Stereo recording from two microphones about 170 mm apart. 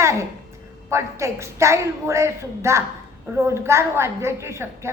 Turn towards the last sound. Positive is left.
turn(degrees=-15)  # may be behind; listen again after turning